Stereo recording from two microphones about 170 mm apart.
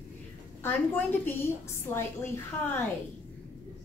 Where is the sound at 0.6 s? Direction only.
10° left (ahead or behind).